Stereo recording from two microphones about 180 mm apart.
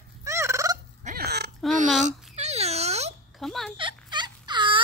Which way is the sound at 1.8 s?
40° right (ahead or behind).